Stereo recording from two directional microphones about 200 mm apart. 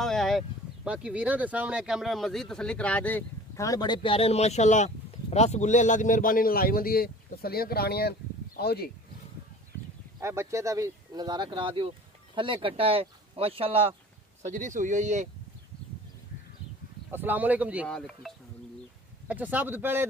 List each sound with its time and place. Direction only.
0.0 s speech: centre (ahead or behind); by 8.9 s 50° left (ahead or behind)
10.2 s speech: 15° right (ahead or behind)
14.5 s speech: 40° right (ahead or behind)
17.1 s speech: 10° right (ahead or behind)